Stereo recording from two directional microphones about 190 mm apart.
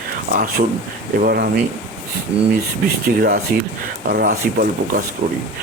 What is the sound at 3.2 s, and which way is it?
Speech, 50° right (ahead or behind).